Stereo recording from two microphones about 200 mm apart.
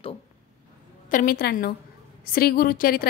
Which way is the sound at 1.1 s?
45° left (ahead or behind).